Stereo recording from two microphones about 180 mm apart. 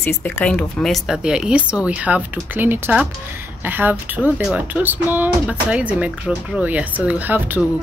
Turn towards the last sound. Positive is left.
turn(degrees=-10)  # may be behind; listen again after turning